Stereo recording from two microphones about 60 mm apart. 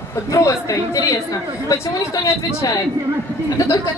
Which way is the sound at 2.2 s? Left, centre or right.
Left.